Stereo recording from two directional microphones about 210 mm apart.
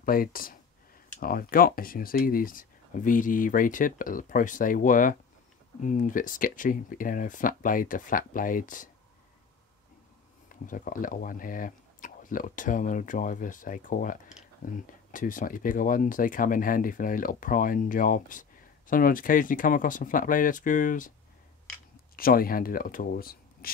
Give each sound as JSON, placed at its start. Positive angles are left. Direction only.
{"t": 0.0, "sound": "speech", "side_deg": 40}
{"t": 10.5, "sound": "speech", "side_deg": 40}
{"t": 22.1, "sound": "speech", "side_deg": 45}